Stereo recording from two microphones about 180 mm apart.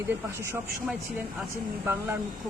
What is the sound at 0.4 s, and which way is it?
Speech, 15° right (ahead or behind).